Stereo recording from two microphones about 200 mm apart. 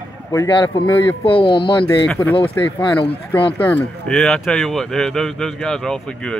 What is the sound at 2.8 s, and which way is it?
Speech, 25° left (ahead or behind).